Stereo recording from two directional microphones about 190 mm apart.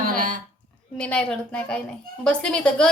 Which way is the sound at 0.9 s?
5° left (ahead or behind).